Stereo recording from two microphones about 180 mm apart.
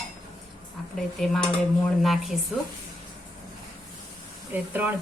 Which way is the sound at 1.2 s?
5° left (ahead or behind).